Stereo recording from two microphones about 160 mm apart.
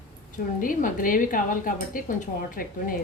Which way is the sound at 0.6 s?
60° left (ahead or behind).